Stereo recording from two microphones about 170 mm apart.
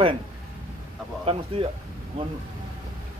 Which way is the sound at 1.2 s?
35° right (ahead or behind).